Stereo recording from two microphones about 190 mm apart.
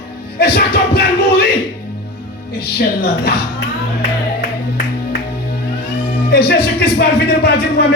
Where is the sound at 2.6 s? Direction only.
55° left (ahead or behind).